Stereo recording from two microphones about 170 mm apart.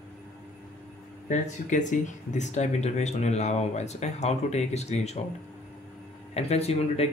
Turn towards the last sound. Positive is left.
turn(degrees=40)  # may be behind; listen again after turning